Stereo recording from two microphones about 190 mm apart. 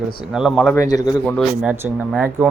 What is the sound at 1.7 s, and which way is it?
Speech, 10° right (ahead or behind).